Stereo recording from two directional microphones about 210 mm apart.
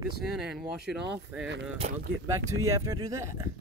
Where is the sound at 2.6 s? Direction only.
15° right (ahead or behind).